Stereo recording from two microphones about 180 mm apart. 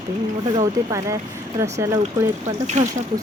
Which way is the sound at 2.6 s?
40° right (ahead or behind).